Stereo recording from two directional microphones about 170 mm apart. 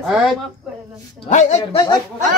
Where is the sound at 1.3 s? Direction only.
45° left (ahead or behind).